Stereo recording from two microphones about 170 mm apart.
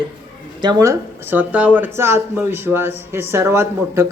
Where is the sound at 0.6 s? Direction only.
20° right (ahead or behind).